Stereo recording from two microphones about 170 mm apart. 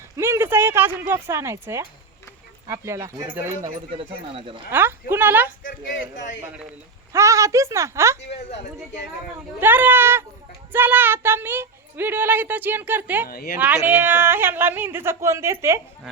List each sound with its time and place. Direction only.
0.2 s speech: 15° right (ahead or behind)
3.9 s speech: 30° right (ahead or behind)
4.7 s speech: 15° right (ahead or behind)
7.1 s speech: 15° right (ahead or behind)
9.6 s speech: 10° right (ahead or behind)
13.2 s a woman's voice: 65° left (ahead or behind)
13.6 s speech: 10° right (ahead or behind)